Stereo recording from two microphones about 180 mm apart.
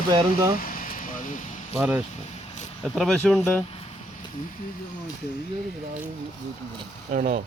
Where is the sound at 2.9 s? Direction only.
5° left (ahead or behind).